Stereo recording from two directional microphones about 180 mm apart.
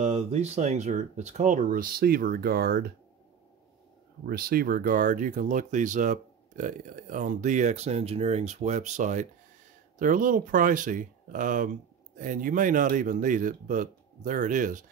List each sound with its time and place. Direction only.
0.0 s speech: 35° right (ahead or behind); by 2.9 s 55° right (ahead or behind)
4.3 s speech: 55° right (ahead or behind)